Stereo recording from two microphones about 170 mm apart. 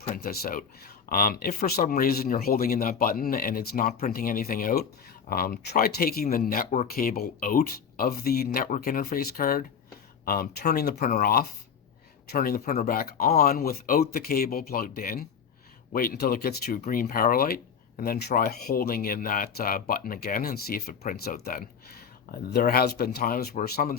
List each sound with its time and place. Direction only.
0.0 s speech: 55° left (ahead or behind)
16.8 s speech: 55° left (ahead or behind)
21.0 s speech: 45° left (ahead or behind); by 23.9 s 65° left (ahead or behind)